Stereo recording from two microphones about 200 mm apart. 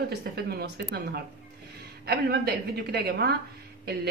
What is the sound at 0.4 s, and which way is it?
Speech, 50° right (ahead or behind).